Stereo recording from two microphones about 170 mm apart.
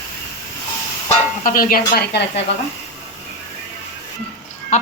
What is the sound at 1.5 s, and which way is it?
Speech, 55° left (ahead or behind).